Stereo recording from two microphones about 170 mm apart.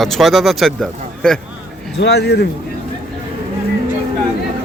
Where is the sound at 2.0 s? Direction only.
80° left.